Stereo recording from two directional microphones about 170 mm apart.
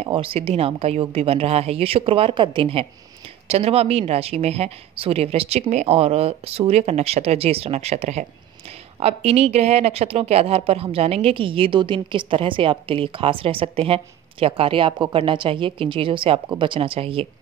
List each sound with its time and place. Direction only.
0.0 s a woman's voice: 35° right (ahead or behind)